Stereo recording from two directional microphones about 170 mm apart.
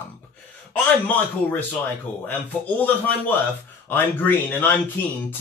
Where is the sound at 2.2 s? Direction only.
10° left (ahead or behind).